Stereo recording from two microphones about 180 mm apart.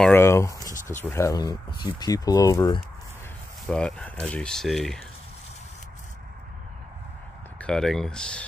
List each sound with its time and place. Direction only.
0.0 s a sound: 10° left (ahead or behind)
1.0 s speech: 15° left (ahead or behind)
3.6 s speech: 5° left (ahead or behind)
7.6 s speech: 5° left (ahead or behind)